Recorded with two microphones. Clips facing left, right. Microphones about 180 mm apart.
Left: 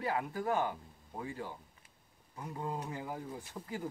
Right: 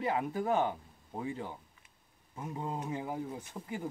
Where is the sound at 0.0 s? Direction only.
20° right (ahead or behind).